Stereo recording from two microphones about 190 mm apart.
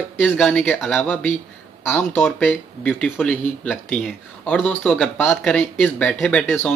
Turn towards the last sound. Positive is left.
turn(degrees=10)  # may be behind; listen again after turning